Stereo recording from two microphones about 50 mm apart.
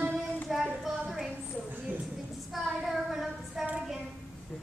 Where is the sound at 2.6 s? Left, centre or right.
Centre.